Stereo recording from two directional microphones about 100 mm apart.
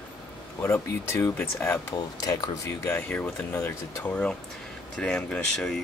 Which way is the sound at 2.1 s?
40° left (ahead or behind).